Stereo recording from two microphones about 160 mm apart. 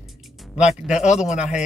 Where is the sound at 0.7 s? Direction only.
5° right (ahead or behind).